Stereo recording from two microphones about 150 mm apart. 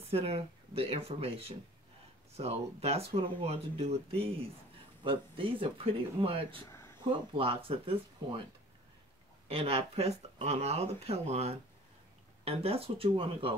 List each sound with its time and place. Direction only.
0.1 s speech: 40° right (ahead or behind)
6.7 s a sound: 20° left (ahead or behind)
7.1 s speech: 35° right (ahead or behind)
9.5 s speech: 40° right (ahead or behind)